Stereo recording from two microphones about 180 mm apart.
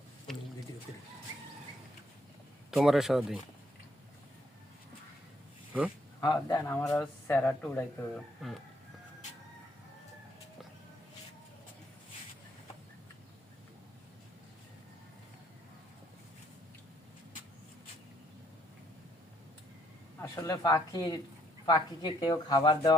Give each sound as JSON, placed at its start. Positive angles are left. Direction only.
{"t": 2.6, "sound": "speech", "side_deg": 0}
{"t": 6.1, "sound": "speech", "side_deg": 20}
{"t": 20.3, "sound": "speech", "side_deg": 20}